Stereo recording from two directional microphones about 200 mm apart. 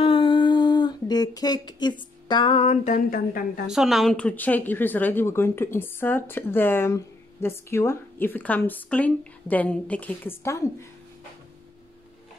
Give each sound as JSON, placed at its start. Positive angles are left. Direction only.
{"t": 0.0, "sound": "humming", "side_deg": 25}
{"t": 3.6, "sound": "speech", "side_deg": 0}